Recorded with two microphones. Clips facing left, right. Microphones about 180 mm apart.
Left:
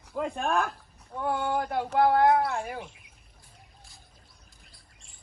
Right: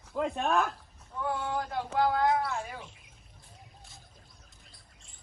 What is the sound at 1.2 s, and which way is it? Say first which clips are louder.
Speech: left 4 dB; 60° left (ahead or behind).